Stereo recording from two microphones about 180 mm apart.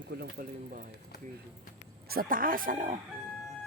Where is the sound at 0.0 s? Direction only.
65° right (ahead or behind).